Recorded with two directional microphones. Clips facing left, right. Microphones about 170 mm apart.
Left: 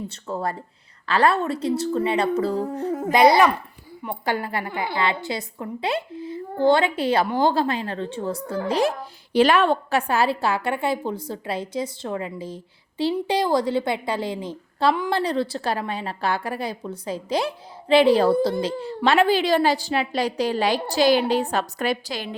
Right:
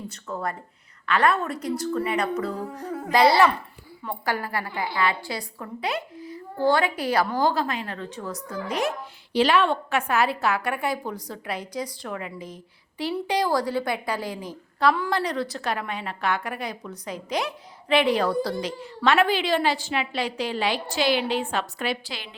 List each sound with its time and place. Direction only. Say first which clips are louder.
0.1 s a woman's voice: left 3 dB; 30° left (ahead or behind)
9.3 s a woman's voice: left 3 dB; 50° left (ahead or behind)